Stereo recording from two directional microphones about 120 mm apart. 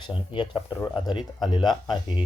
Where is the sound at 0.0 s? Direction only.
45° left (ahead or behind).